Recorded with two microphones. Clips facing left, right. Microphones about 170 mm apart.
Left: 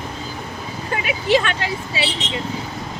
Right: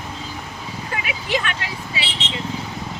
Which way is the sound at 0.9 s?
30° left (ahead or behind).